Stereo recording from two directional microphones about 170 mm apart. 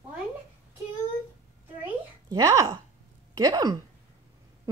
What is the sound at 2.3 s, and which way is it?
Speech, 20° right (ahead or behind).